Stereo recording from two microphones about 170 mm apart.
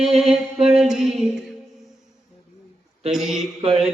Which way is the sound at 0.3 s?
35° right (ahead or behind).